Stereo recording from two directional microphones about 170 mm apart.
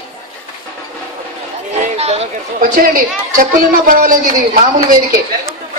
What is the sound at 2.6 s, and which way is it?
A man's voice, 55° right (ahead or behind).